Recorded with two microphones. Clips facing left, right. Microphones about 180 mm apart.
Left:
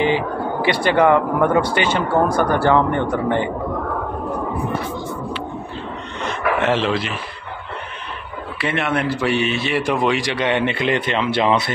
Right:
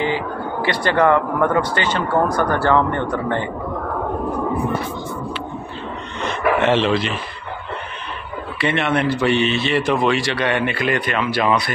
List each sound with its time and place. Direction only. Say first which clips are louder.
0.0 s a man's voice: left 3 dB; 20° left (ahead or behind)
6.6 s a man's voice: right 2 dB; 5° left (ahead or behind)
8.5 s a man's voice: right 2 dB; 5° left (ahead or behind); by 11.7 s 25° left (ahead or behind)